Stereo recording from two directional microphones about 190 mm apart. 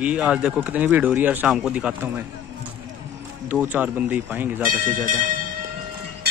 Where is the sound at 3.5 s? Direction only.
10° right (ahead or behind).